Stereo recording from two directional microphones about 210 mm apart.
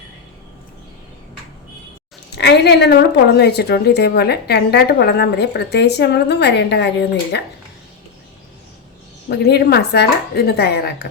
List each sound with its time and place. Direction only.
2.4 s a woman's voice: 55° left (ahead or behind)
9.3 s a woman's voice: 50° left (ahead or behind)